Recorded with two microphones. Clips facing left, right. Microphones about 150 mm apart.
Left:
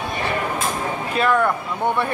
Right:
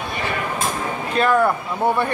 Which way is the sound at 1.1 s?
5° right (ahead or behind).